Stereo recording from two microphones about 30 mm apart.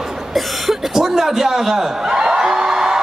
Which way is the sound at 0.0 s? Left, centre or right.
Centre.